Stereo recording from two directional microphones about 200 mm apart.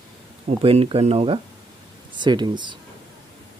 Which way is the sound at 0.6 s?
30° right (ahead or behind).